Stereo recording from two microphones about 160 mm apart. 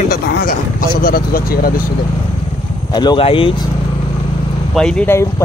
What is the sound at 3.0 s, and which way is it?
Speech, 30° left (ahead or behind).